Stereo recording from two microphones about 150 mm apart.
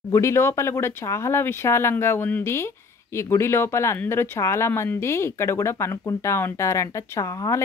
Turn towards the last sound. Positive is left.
turn(degrees=20)  # may be behind; listen again after turning